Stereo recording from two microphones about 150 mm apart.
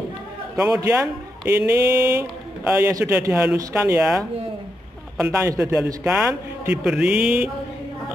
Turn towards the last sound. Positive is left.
turn(degrees=-5)  # may be behind; listen again after turning